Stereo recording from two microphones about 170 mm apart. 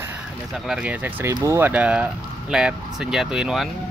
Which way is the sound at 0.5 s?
5° right (ahead or behind).